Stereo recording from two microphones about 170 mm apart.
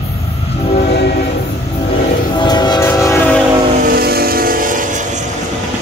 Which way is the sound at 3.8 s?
65° right (ahead or behind).